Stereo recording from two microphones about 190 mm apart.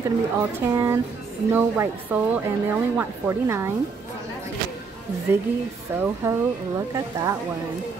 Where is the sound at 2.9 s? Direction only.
15° right (ahead or behind).